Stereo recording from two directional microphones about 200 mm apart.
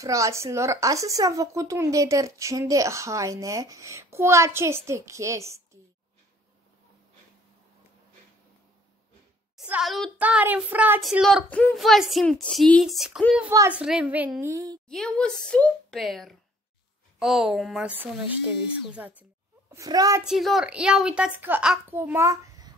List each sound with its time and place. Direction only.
0.0 s a woman's voice: 15° right (ahead or behind)
9.6 s speech: 5° right (ahead or behind)
13.5 s a woman's voice: 10° right (ahead or behind)
14.9 s a woman's voice: 5° left (ahead or behind); by 20.2 s 15° right (ahead or behind)
20.2 s speech: centre (ahead or behind)